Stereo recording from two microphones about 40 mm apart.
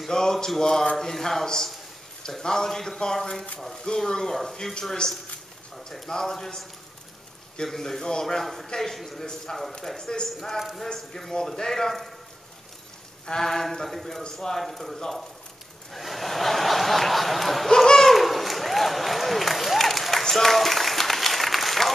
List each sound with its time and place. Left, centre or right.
0.1 s speech: centre
3.7 s speech: left
4.3 s speech: centre
5.0 s speech: left; by 12.1 s centre
13.3 s speech: centre
17.6 s speech: centre
18.0 s applause: centre